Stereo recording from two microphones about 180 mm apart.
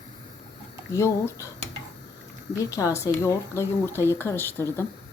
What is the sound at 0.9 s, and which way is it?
Speech, 15° left (ahead or behind).